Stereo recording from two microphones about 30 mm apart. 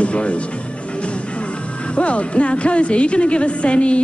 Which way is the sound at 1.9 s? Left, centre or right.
Left.